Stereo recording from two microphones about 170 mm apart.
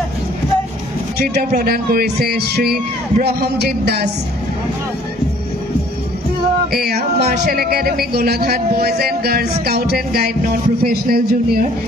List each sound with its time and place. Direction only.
1.1 s speech: 70° right (ahead or behind)
6.7 s a man's voice: 65° right (ahead or behind)